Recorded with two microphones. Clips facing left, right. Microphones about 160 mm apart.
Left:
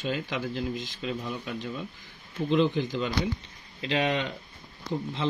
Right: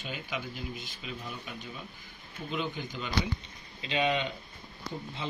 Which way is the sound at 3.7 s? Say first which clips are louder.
Left 2 dB; 75° left (ahead or behind).